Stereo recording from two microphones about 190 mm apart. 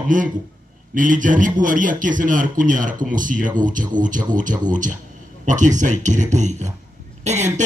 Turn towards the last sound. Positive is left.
turn(degrees=-35)  # may be behind; listen again after turning